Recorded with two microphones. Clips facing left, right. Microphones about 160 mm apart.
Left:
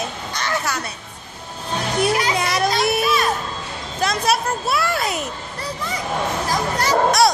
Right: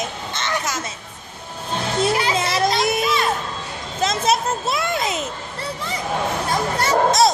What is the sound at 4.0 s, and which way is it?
A child's voice, 20° right (ahead or behind).